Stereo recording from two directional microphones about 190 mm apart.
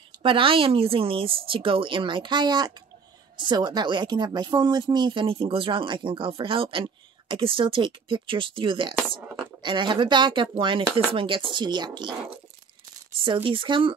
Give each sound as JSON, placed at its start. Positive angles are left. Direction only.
{"t": 0.2, "sound": "a woman's voice", "side_deg": -30}
{"t": 9.2, "sound": "speech", "side_deg": -5}
{"t": 9.6, "sound": "a woman's voice", "side_deg": -25}